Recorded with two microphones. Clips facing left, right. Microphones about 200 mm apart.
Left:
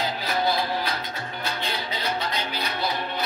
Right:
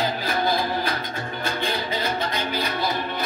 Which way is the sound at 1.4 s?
50° right (ahead or behind).